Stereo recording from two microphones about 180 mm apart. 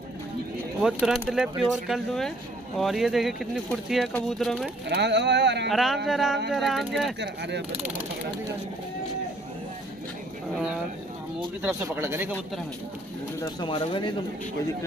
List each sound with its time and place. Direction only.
0.8 s speech: 5° right (ahead or behind)
4.8 s speech: 70° right (ahead or behind)
5.7 s speech: centre (ahead or behind)
7.2 s speech: 70° right (ahead or behind)
11.6 s speech: 10° right (ahead or behind)
13.4 s speech: 25° left (ahead or behind)